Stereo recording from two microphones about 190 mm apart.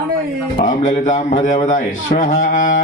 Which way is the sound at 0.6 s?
45° left (ahead or behind).